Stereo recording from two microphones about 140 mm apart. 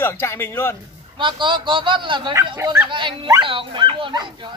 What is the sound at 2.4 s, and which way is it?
Speech, 20° right (ahead or behind).